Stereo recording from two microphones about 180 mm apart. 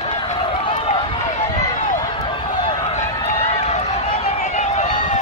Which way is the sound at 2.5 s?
35° left (ahead or behind).